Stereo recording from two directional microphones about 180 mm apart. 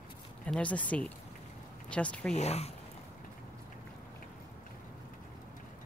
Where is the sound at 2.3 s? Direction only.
35° left (ahead or behind).